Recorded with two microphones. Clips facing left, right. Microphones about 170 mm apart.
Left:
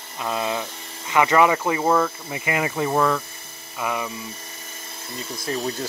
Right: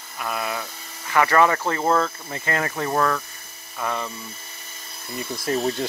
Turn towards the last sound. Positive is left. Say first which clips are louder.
# right 3 dB
turn(degrees=-35)  # may be behind; listen again after turning